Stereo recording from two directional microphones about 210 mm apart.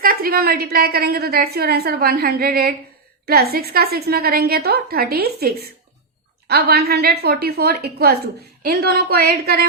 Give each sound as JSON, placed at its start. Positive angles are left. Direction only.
{"t": 0.0, "sound": "a woman's voice", "side_deg": -45}